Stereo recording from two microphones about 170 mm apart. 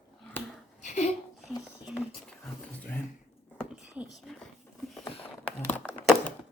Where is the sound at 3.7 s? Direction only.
5° right (ahead or behind).